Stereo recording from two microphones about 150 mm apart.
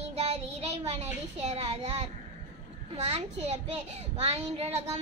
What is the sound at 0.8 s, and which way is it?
Speech, 45° right (ahead or behind).